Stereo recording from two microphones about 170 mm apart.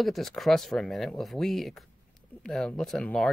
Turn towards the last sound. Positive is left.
turn(degrees=0)  # may be behind; listen again after turning